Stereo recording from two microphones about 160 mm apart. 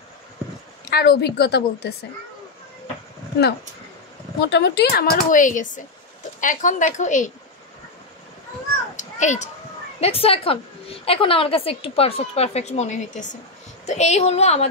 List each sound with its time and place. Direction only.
0.8 s a woman's voice: 90° left
4.4 s a woman's voice: 90° left; by 7.3 s 50° left (ahead or behind)
8.9 s a sound: 45° left (ahead or behind)
9.9 s a woman's voice: 40° left (ahead or behind)